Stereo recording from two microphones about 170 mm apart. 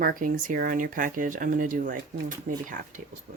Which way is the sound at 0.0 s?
55° right (ahead or behind).